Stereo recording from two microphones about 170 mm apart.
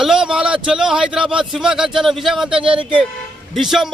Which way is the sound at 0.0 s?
5° right (ahead or behind).